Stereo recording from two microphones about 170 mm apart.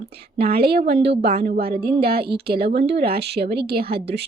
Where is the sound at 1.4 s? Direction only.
60° right (ahead or behind).